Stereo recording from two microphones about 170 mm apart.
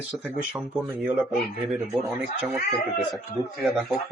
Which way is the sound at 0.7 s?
10° right (ahead or behind).